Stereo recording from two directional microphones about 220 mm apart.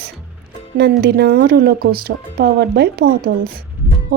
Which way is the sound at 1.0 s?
45° right (ahead or behind).